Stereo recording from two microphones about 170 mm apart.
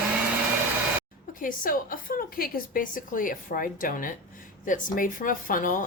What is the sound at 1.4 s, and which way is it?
Speech, 55° left (ahead or behind).